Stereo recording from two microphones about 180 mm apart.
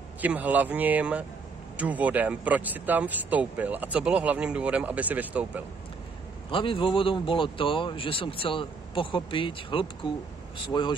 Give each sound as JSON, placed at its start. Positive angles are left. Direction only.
{"t": 0.2, "sound": "speech", "side_deg": -10}
{"t": 6.5, "sound": "speech", "side_deg": 30}